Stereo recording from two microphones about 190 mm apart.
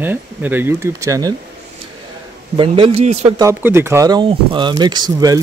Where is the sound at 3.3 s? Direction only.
15° right (ahead or behind).